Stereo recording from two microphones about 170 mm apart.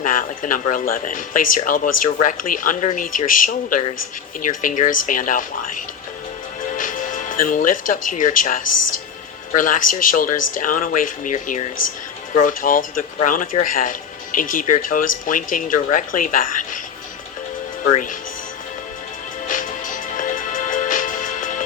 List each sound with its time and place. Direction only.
0.0 s speech: 50° left (ahead or behind)
20.1 s music: 50° left (ahead or behind)